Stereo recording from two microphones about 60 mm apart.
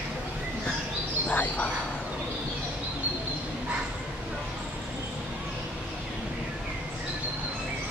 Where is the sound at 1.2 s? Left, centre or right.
Left.